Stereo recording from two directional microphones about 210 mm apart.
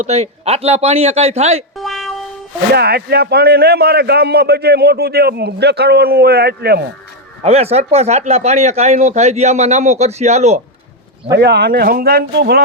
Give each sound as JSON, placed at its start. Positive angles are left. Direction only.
{"t": 0.0, "sound": "a man's voice", "side_deg": -30}
{"t": 1.7, "sound": "music", "side_deg": 0}
{"t": 2.7, "sound": "a man's voice", "side_deg": -50}
{"t": 7.4, "sound": "speech", "side_deg": -30}
{"t": 11.3, "sound": "a man's voice", "side_deg": -50}